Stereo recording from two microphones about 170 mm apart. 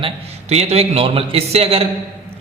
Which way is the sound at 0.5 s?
40° right (ahead or behind).